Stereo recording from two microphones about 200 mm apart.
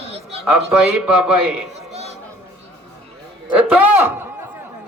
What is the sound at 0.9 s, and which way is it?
Speech, 5° right (ahead or behind).